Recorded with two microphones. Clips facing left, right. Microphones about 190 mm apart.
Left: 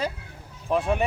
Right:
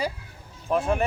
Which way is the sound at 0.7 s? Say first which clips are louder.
Even; centre (ahead or behind).